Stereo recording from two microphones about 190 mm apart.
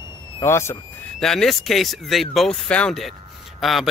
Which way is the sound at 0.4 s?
15° left (ahead or behind).